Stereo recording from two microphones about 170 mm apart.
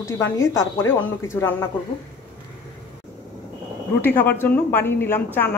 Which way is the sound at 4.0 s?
10° left (ahead or behind).